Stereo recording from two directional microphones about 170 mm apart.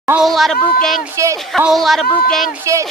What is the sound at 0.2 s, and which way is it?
Speech, centre (ahead or behind).